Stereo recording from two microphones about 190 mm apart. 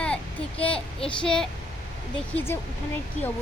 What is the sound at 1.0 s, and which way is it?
Speech, 25° left (ahead or behind).